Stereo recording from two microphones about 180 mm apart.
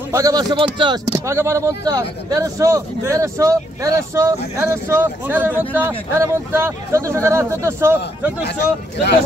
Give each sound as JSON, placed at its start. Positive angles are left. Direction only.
{"t": 0.1, "sound": "speech", "side_deg": -20}